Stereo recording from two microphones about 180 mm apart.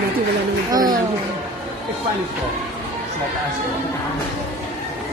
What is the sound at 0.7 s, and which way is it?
Music, 20° right (ahead or behind).